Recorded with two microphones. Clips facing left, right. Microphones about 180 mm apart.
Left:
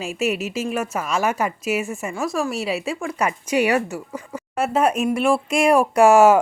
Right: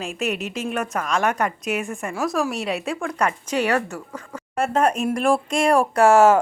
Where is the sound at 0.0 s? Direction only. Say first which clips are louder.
Left 3 dB; 5° left (ahead or behind).